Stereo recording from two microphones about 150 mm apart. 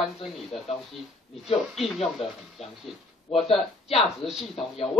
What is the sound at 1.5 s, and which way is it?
Speech, centre (ahead or behind).